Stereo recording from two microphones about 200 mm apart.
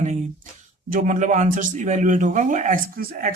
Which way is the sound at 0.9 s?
40° right (ahead or behind).